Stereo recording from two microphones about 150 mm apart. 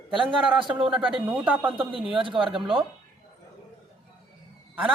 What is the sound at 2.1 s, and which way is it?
Speech, 35° right (ahead or behind).